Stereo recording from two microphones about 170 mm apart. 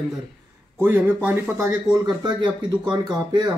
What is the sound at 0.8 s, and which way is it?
Speech, 15° right (ahead or behind).